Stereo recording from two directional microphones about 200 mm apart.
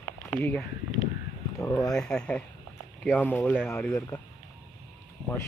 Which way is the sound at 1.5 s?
15° left (ahead or behind).